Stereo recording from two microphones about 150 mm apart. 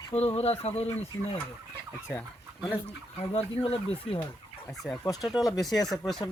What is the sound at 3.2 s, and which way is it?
Speech, 40° left (ahead or behind).